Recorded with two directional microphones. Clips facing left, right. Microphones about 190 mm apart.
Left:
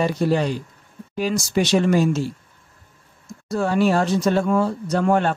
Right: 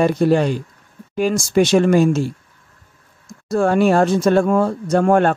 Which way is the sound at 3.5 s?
50° right (ahead or behind).